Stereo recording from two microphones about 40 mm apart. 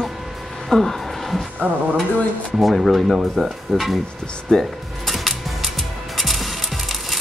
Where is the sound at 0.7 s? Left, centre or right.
Centre.